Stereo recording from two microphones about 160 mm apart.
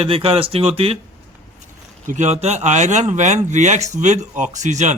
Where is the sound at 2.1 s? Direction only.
45° right (ahead or behind).